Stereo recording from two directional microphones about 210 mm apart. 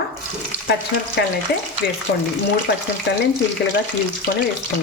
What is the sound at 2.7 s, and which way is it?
Speech, 55° left (ahead or behind).